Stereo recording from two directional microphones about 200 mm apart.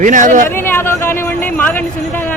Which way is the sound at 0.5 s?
10° left (ahead or behind).